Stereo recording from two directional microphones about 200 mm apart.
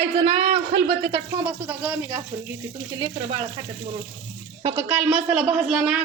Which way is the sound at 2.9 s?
20° right (ahead or behind).